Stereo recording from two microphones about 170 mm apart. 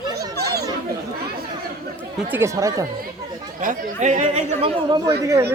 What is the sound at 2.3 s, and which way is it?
Speech, 15° right (ahead or behind).